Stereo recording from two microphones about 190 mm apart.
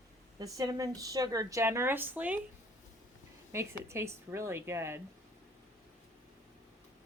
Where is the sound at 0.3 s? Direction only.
20° right (ahead or behind).